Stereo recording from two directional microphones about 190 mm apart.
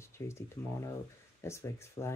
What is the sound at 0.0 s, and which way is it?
Speech, 15° left (ahead or behind).